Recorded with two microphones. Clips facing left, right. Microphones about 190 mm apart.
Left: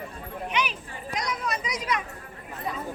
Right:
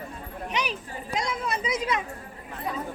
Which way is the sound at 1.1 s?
30° right (ahead or behind).